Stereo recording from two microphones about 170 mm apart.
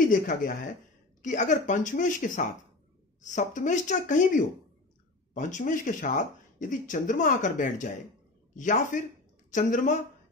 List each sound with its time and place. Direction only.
0.1 s speech: 55° left (ahead or behind)